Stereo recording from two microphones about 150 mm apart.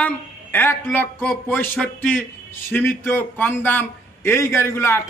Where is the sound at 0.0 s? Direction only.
10° left (ahead or behind).